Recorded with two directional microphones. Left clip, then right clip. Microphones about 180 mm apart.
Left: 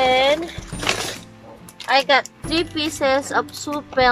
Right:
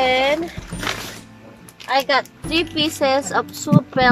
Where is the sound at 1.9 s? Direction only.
Centre (ahead or behind).